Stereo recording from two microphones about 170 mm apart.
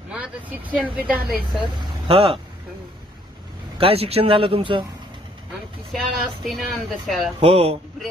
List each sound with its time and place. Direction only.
0.1 s a woman's voice: 10° right (ahead or behind)
1.8 s speech: 35° right (ahead or behind)
3.7 s speech: 35° right (ahead or behind)
5.9 s speech: centre (ahead or behind)
7.3 s speech: 35° right (ahead or behind)